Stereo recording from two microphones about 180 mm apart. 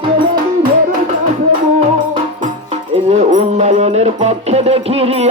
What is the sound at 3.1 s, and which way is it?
Music, 40° right (ahead or behind).